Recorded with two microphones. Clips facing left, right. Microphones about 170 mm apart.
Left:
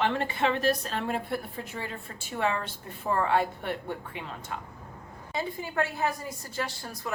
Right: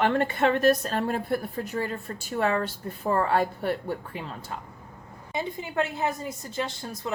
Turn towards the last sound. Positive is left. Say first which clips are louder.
# right 3 dB
turn(degrees=-20)  # may be behind; listen again after turning